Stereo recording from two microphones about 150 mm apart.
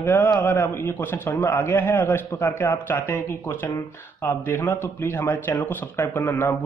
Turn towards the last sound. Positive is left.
turn(degrees=15)  # may be behind; listen again after turning